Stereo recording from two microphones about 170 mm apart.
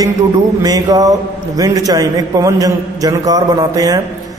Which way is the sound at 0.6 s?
20° right (ahead or behind).